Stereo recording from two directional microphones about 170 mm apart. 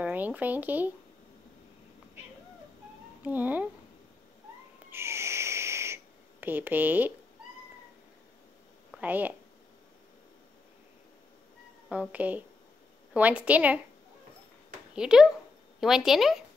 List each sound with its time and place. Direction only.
0.0 s speech: 10° right (ahead or behind)
3.2 s speech: 10° right (ahead or behind)
4.9 s owl: 15° right (ahead or behind)
6.4 s a woman's voice: 10° right (ahead or behind)
8.9 s a woman's voice: 10° right (ahead or behind)
11.9 s a woman's voice: 10° right (ahead or behind)
15.0 s speech: 5° right (ahead or behind)